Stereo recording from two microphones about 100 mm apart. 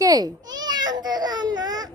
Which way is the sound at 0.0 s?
40° right (ahead or behind).